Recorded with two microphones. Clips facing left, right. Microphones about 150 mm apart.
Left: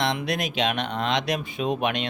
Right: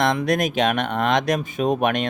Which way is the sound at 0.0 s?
45° right (ahead or behind).